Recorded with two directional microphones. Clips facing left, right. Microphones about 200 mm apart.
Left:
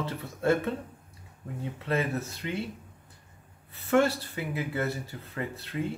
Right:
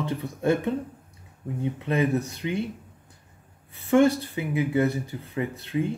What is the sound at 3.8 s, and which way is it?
Speech, 15° right (ahead or behind).